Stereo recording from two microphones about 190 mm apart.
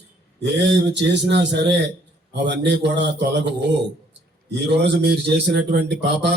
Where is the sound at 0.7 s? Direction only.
65° right (ahead or behind).